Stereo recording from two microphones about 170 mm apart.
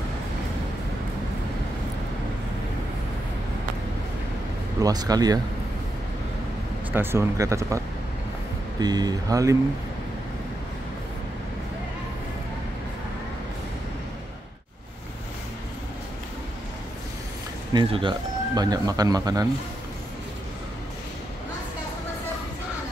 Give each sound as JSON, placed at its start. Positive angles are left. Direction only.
{"t": 4.7, "sound": "speech", "side_deg": -20}
{"t": 6.9, "sound": "speech", "side_deg": -15}
{"t": 17.7, "sound": "speech", "side_deg": -30}